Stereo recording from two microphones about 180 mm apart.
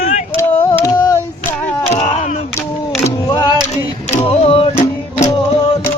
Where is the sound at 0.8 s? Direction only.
20° left (ahead or behind).